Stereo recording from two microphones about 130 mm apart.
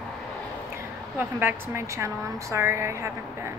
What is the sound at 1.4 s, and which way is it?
A woman's voice, 20° right (ahead or behind).